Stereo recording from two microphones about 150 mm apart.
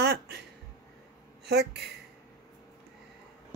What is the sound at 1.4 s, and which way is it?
Speech, 90° right.